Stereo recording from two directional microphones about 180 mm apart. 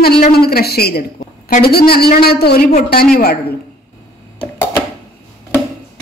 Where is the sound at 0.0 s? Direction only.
60° left (ahead or behind).